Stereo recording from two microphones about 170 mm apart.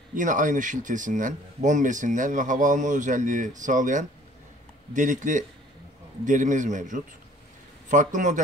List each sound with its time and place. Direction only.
0.1 s speech: 50° right (ahead or behind)